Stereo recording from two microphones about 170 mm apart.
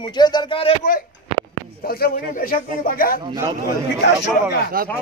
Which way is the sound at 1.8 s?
60° left (ahead or behind).